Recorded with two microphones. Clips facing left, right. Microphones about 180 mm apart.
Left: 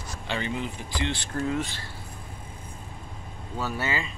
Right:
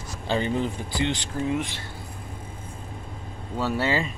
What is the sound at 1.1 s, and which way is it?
Speech, 15° right (ahead or behind).